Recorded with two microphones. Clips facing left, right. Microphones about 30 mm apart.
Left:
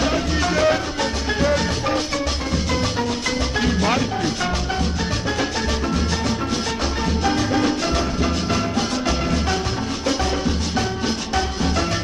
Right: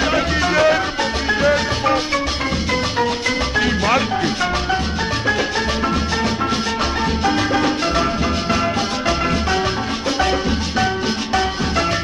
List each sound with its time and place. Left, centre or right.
0.0 s music: right
3.5 s music: right
7.3 s music: right